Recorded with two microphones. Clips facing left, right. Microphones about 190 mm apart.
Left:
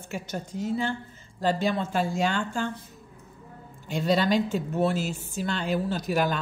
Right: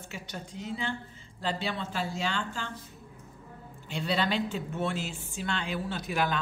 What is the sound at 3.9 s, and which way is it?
Speech, 45° left (ahead or behind).